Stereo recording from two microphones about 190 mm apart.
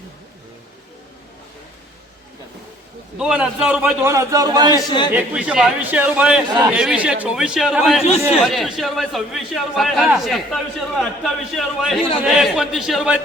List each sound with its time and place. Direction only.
3.2 s a man's voice: 5° right (ahead or behind); by 4.7 s 20° right (ahead or behind)
4.7 s a man's voice: 25° left (ahead or behind)
5.1 s a man's voice: 5° right (ahead or behind)